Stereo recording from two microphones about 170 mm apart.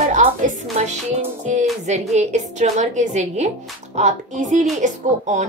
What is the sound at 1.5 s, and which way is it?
Speech, 40° right (ahead or behind).